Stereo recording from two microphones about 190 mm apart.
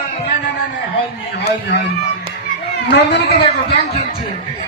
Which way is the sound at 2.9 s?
65° left (ahead or behind).